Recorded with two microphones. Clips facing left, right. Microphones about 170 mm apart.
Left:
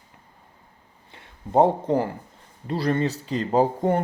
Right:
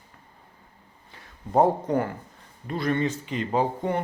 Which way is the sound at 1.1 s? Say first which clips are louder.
Left 2 dB; 25° left (ahead or behind).